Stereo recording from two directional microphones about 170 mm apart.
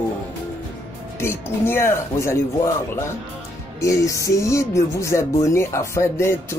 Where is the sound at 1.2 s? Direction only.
15° left (ahead or behind).